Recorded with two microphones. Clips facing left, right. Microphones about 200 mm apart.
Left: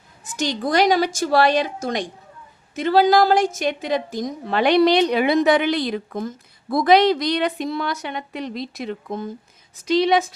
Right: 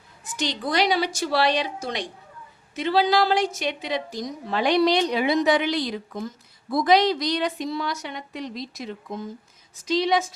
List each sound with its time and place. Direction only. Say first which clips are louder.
0.3 s a woman's voice: left 5 dB; 45° left (ahead or behind); by 10.2 s 65° left (ahead or behind)